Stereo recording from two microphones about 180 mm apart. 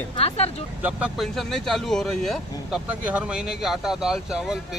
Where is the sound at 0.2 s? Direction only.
35° left (ahead or behind).